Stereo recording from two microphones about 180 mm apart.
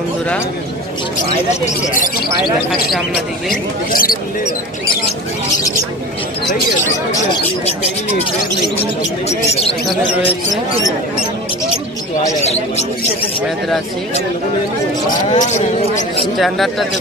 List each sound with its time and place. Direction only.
2.0 s speech: 55° left (ahead or behind)
3.9 s speech: 50° left (ahead or behind)
15.0 s speech: 45° left (ahead or behind)
16.3 s speech: centre (ahead or behind)